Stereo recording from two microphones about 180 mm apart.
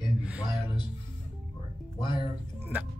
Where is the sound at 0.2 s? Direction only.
5° right (ahead or behind).